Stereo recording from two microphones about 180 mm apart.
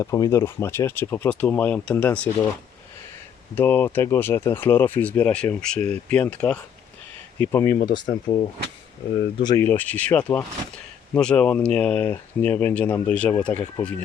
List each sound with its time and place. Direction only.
0.0 s speech: 20° left (ahead or behind)
3.5 s speech: 10° left (ahead or behind)
7.8 s speech: 25° left (ahead or behind)
9.6 s speech: 10° left (ahead or behind)